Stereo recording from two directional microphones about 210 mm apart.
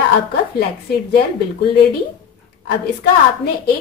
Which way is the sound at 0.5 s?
50° left (ahead or behind).